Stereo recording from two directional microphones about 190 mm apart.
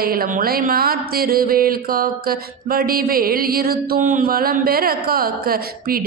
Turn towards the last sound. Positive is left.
turn(degrees=-50)  # may be behind; listen again after turning